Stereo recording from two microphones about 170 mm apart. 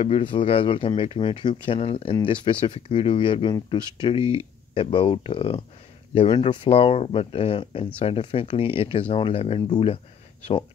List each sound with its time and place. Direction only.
0.0 s speech: 35° left (ahead or behind)